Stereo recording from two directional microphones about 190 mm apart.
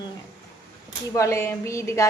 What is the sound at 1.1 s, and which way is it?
Speech, 15° left (ahead or behind).